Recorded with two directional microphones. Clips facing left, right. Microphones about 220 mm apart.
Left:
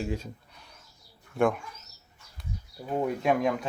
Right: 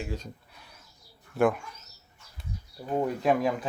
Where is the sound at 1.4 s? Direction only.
5° right (ahead or behind).